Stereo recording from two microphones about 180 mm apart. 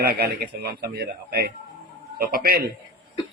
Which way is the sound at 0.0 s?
65° right (ahead or behind).